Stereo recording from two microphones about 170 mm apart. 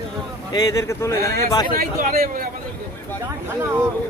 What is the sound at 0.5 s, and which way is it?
Speech, 20° left (ahead or behind).